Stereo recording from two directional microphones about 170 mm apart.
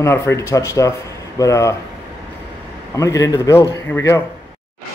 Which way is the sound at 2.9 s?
20° left (ahead or behind).